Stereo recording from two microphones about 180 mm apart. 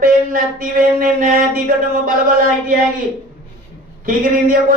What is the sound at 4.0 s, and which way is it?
Speech, 50° right (ahead or behind).